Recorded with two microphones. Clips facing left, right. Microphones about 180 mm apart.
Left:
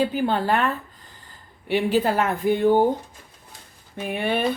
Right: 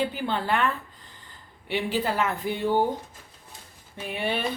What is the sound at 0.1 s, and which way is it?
Speech, 45° left (ahead or behind).